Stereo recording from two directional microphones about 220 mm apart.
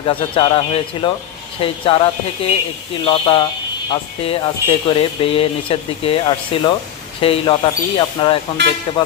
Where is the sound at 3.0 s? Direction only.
25° left (ahead or behind).